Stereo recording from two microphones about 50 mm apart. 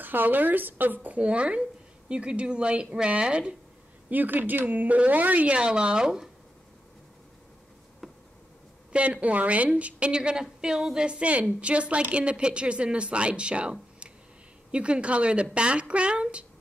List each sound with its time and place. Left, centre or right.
0.0 s speech: right
4.1 s speech: right; by 6.3 s centre
8.0 s insect: centre
8.9 s a woman's voice: right
11.1 s speech: right